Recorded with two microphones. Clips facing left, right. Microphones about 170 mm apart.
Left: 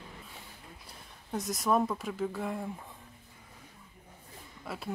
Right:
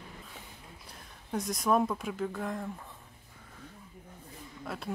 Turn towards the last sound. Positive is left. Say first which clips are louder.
# right 1 dB
turn(degrees=0)  # may be behind; listen again after turning